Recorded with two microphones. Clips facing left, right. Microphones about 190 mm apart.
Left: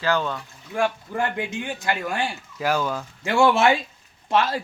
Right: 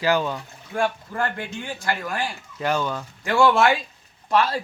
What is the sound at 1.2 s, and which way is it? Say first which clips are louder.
A man's voice: left 2 dB; 15° left (ahead or behind).